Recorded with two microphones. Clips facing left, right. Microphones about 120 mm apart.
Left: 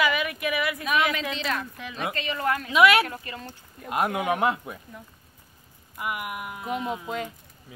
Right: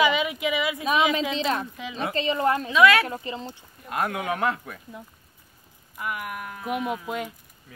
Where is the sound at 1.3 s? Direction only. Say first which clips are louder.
Right 4 dB; 30° right (ahead or behind).